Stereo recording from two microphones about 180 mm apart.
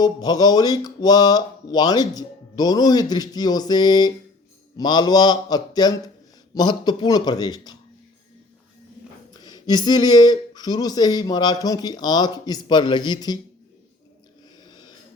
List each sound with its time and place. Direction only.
0.0 s speech: 20° left (ahead or behind)
9.3 s speech: 25° left (ahead or behind)
14.7 s a sound: 25° left (ahead or behind)